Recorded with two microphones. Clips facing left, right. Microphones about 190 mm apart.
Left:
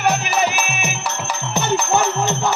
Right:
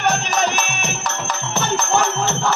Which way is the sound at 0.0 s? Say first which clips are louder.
Left 1 dB; 10° left (ahead or behind).